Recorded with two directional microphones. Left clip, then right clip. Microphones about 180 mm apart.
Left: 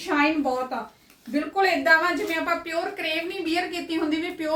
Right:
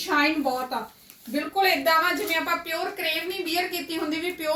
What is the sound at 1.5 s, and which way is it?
Speech, centre (ahead or behind).